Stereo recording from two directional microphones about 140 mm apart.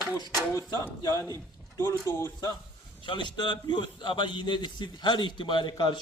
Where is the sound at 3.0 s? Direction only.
35° left (ahead or behind).